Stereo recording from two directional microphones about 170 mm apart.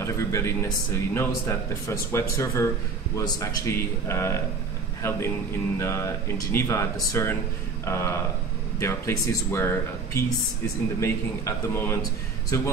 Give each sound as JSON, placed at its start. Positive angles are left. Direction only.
{"t": 0.0, "sound": "speech", "side_deg": 15}